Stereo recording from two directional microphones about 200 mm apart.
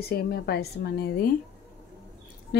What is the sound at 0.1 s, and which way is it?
Speech, 55° left (ahead or behind).